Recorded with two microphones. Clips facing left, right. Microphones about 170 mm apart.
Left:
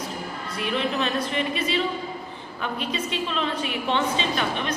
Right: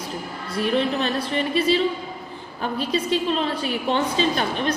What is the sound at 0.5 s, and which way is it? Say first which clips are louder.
A woman's voice: right 5 dB; 35° right (ahead or behind).